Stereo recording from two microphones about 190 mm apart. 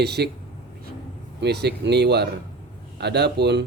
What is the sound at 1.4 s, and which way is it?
A man's voice, 60° right (ahead or behind).